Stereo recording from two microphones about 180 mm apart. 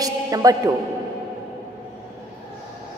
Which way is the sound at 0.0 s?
20° right (ahead or behind).